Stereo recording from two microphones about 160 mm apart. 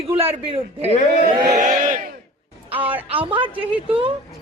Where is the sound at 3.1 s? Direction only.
35° right (ahead or behind).